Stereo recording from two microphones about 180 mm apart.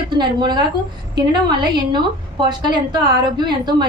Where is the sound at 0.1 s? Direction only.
25° right (ahead or behind).